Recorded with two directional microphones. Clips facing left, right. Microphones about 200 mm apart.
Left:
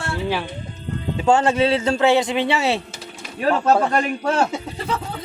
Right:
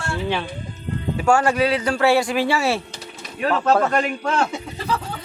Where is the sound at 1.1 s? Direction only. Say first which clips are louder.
Left 1 dB; 20° left (ahead or behind).